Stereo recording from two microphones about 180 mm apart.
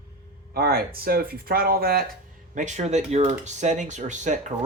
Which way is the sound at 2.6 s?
40° right (ahead or behind).